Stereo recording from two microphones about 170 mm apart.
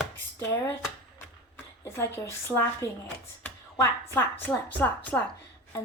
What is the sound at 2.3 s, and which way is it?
Speech, 15° left (ahead or behind).